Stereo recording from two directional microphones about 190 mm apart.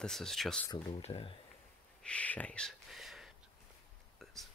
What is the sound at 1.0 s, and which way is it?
Speech, 30° left (ahead or behind).